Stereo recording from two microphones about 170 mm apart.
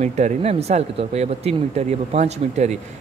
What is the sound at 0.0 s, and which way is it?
Speech, 40° right (ahead or behind).